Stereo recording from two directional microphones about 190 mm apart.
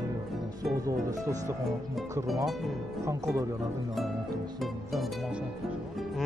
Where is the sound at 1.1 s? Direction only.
15° right (ahead or behind).